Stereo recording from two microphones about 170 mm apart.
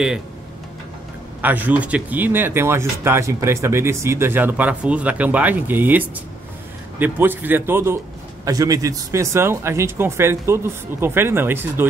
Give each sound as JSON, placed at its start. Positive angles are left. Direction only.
{"t": 1.4, "sound": "speech", "side_deg": -10}